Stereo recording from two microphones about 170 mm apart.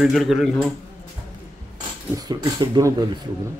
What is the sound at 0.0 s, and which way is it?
Speech, centre (ahead or behind).